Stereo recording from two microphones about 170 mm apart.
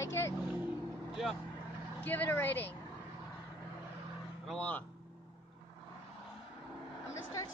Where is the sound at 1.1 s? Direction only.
Centre (ahead or behind).